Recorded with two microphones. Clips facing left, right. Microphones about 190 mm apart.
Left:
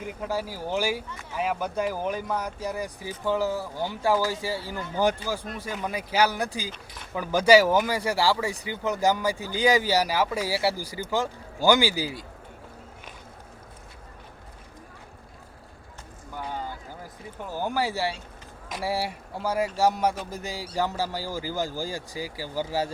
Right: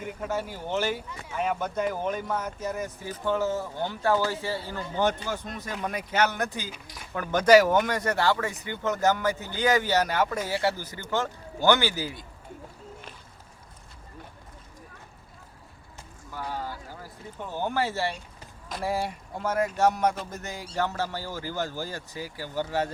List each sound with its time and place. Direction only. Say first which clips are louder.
0.3 s speech: left 1 dB; 10° left (ahead or behind)
16.3 s a sound: even; 20° left (ahead or behind)
17.5 s speech: left 1 dB; 10° left (ahead or behind)